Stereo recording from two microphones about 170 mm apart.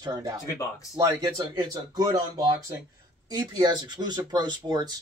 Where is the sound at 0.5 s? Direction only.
20° left (ahead or behind).